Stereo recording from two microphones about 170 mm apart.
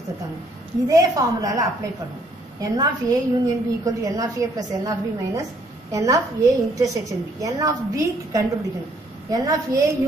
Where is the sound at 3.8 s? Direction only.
20° right (ahead or behind).